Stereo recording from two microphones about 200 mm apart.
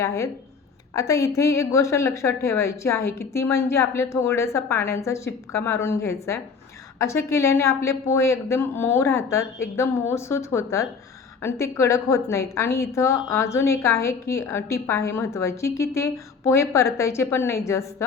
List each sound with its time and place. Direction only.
0.0 s a woman's voice: 15° left (ahead or behind)